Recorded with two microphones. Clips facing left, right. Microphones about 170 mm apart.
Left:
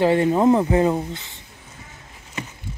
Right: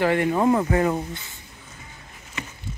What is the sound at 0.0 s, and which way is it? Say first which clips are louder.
Speech: left 4 dB; 25° left (ahead or behind).